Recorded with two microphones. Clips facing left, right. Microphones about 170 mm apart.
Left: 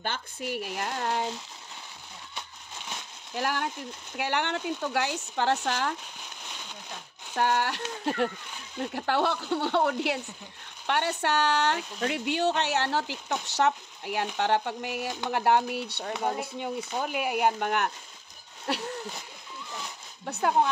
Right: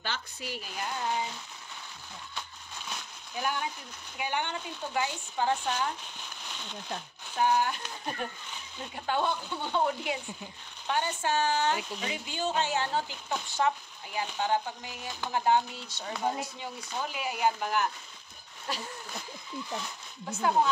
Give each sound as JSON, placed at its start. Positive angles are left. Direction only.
{"t": 0.0, "sound": "speech", "side_deg": 55}
{"t": 3.3, "sound": "speech", "side_deg": 80}
{"t": 7.3, "sound": "speech", "side_deg": 75}
{"t": 20.2, "sound": "speech", "side_deg": 60}